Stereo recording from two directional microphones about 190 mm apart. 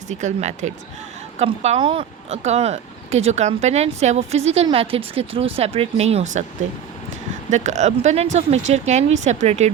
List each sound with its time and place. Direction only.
0.1 s speech: 40° right (ahead or behind)
7.5 s speech: 40° right (ahead or behind)